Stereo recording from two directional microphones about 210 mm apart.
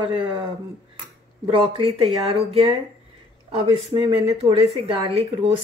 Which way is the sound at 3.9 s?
25° right (ahead or behind).